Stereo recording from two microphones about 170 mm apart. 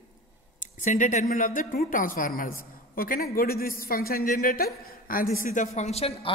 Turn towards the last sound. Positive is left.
turn(degrees=35)  # may be behind; listen again after turning